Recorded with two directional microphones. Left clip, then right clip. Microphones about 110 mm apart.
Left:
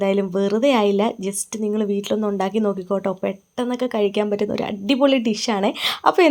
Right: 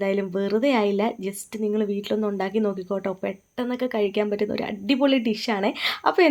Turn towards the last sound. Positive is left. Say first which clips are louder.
# left 4 dB
turn(degrees=25)  # may be behind; listen again after turning